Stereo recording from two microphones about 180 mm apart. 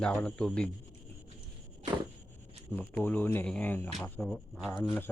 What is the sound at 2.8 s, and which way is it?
Speech, 10° left (ahead or behind).